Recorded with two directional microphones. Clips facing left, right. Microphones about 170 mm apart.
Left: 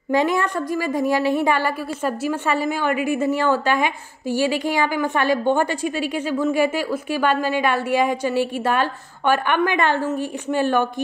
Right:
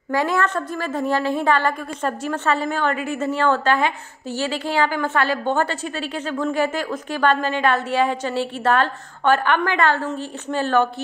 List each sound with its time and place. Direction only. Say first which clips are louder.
0.1 s a woman's voice: left 1 dB; 20° left (ahead or behind)